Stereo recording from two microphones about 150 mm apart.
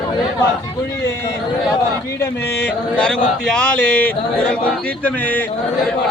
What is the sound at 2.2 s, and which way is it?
A man's voice, 10° left (ahead or behind).